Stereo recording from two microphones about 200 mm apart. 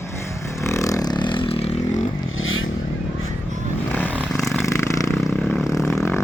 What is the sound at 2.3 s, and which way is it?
Vehicle, 80° left.